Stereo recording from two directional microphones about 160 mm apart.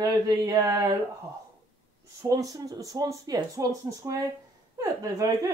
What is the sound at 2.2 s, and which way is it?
Speech, 20° right (ahead or behind).